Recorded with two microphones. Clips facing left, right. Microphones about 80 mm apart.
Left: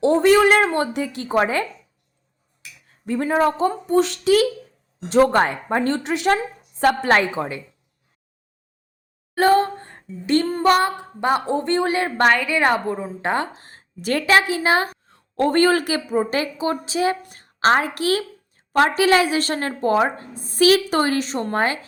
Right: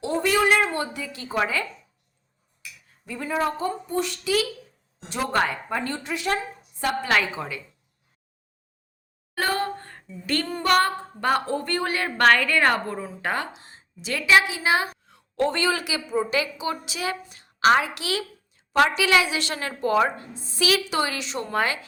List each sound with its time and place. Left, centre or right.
0.0 s a woman's voice: left
0.8 s a woman's voice: left
1.3 s a woman's voice: left
3.1 s speech: left
5.3 s a woman's voice: left
5.8 s speech: left
6.7 s a woman's voice: left
7.1 s a woman's voice: left
9.3 s a sound: left
10.2 s a woman's voice: left
12.2 s a woman's voice: centre
13.1 s a woman's voice: left
17.2 s a woman's voice: left